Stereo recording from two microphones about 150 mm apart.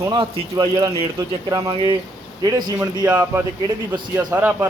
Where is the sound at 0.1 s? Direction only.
30° right (ahead or behind).